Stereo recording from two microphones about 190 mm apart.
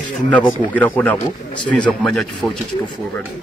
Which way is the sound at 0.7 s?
10° left (ahead or behind).